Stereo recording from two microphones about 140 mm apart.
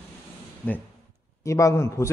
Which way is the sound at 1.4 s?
20° left (ahead or behind).